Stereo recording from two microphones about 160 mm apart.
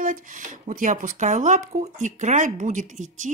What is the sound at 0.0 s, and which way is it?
Speech, 55° right (ahead or behind).